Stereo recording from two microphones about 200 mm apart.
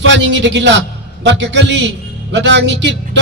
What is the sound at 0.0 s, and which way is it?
A man's voice, 65° right (ahead or behind).